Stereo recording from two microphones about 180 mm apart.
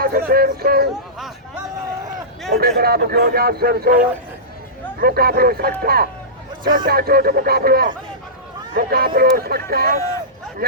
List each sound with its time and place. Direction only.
0.0 s speech: 55° right (ahead or behind)
2.5 s speech: 60° right (ahead or behind)